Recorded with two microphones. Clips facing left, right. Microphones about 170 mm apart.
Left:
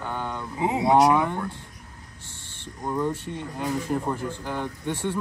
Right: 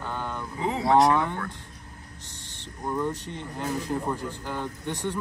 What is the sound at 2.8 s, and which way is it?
Speech, 10° left (ahead or behind).